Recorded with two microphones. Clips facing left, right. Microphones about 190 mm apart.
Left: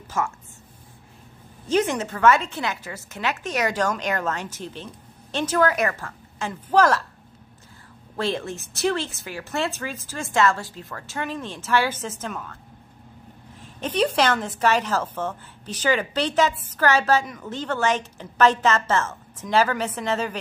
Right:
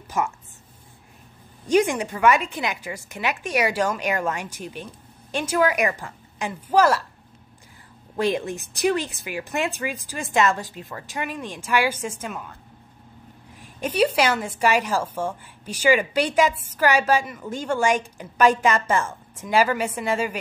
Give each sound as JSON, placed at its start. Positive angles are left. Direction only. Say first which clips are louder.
{"t": 0.2, "sound": "a woman's voice", "louder": "right 1 dB", "side_deg": -20}
{"t": 1.7, "sound": "a woman's voice", "louder": "right 2 dB", "side_deg": -15}
{"t": 8.2, "sound": "a woman's voice", "louder": "right 3 dB", "side_deg": -15}
{"t": 13.6, "sound": "a woman's voice", "louder": "right 2 dB", "side_deg": -10}